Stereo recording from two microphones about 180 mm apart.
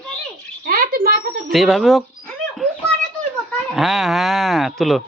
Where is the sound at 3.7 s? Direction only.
Centre (ahead or behind).